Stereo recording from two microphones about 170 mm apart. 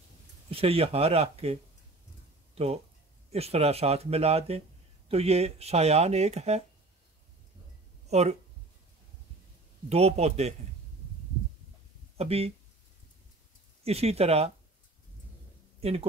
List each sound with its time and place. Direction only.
0.5 s speech: 35° right (ahead or behind)
8.1 s speech: 40° right (ahead or behind)
9.8 s speech: 40° right (ahead or behind)
12.2 s speech: 35° right (ahead or behind)
13.8 s speech: 35° right (ahead or behind)
15.8 s speech: 35° right (ahead or behind)